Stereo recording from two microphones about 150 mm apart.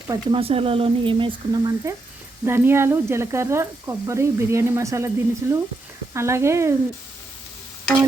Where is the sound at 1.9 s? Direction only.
20° right (ahead or behind).